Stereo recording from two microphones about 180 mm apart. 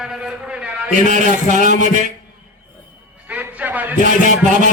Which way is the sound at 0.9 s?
45° right (ahead or behind).